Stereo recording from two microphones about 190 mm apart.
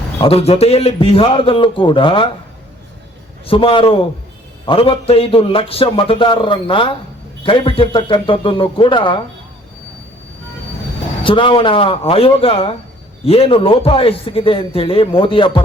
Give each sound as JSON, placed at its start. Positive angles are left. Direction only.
{"t": 0.2, "sound": "a man's voice", "side_deg": 30}
{"t": 3.4, "sound": "a man's voice", "side_deg": 30}
{"t": 11.2, "sound": "a man's voice", "side_deg": 25}